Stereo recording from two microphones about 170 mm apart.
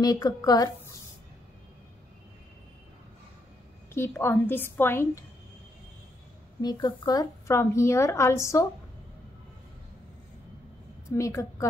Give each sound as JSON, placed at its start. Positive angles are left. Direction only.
{"t": 0.0, "sound": "a woman's voice", "side_deg": 20}
{"t": 4.2, "sound": "speech", "side_deg": 15}
{"t": 6.6, "sound": "speech", "side_deg": 25}
{"t": 11.1, "sound": "speech", "side_deg": 15}